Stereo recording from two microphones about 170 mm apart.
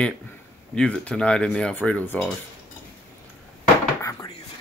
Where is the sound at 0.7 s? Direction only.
5° left (ahead or behind).